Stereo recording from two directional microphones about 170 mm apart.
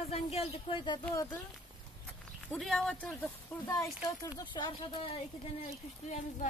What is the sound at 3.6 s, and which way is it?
Speech, 20° left (ahead or behind).